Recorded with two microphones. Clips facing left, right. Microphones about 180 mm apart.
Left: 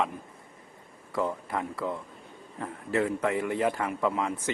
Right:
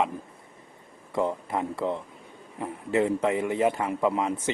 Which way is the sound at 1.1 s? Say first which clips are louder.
Right 3 dB; 20° right (ahead or behind).